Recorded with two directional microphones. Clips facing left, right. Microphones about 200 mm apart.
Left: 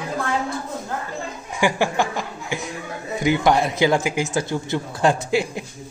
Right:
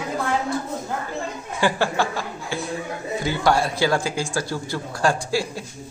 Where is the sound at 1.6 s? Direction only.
15° left (ahead or behind).